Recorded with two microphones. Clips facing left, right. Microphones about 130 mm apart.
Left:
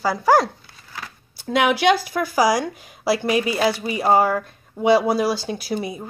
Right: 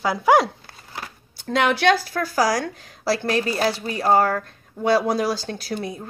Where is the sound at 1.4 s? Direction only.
10° left (ahead or behind).